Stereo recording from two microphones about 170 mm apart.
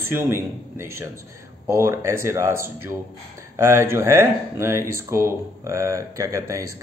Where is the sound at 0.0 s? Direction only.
15° right (ahead or behind).